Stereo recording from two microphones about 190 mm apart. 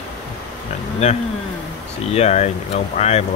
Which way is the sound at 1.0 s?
35° left (ahead or behind).